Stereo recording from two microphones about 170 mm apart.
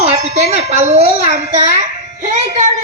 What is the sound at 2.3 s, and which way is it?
Music, 45° right (ahead or behind).